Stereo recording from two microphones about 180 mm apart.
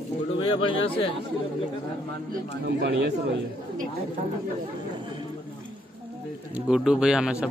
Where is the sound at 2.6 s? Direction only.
70° right (ahead or behind).